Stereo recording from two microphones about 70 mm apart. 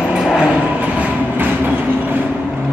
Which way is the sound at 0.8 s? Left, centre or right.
Right.